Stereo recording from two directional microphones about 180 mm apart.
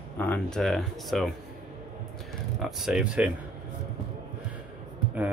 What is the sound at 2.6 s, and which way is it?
Speech, 5° right (ahead or behind).